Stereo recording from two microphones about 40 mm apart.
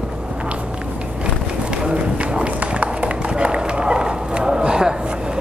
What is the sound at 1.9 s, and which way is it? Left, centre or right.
Run, right.